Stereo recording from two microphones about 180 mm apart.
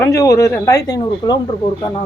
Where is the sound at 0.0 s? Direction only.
15° left (ahead or behind).